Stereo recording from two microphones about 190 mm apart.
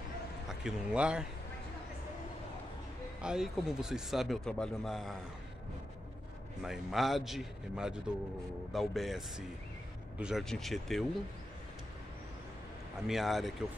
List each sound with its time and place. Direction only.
0.5 s speech: 5° right (ahead or behind)
3.2 s speech: 5° right (ahead or behind)
6.6 s speech: centre (ahead or behind)
13.0 s speech: centre (ahead or behind)